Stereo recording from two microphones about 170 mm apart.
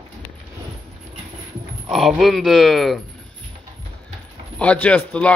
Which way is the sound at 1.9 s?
Centre (ahead or behind).